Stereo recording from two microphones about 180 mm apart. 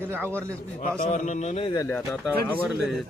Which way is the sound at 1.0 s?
40° left (ahead or behind).